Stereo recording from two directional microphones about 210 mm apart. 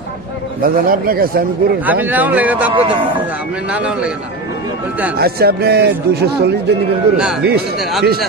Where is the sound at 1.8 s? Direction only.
10° right (ahead or behind).